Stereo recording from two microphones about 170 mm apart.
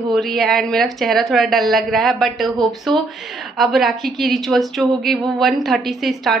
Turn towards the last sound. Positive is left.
turn(degrees=0)  # may be behind; listen again after turning